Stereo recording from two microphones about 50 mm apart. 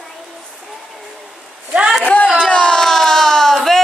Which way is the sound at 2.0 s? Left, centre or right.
Left.